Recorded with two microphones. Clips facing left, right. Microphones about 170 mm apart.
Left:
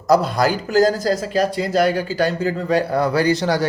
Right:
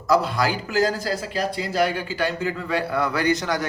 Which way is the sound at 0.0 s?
40° left (ahead or behind).